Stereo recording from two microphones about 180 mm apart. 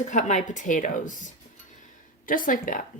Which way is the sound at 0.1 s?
45° left (ahead or behind).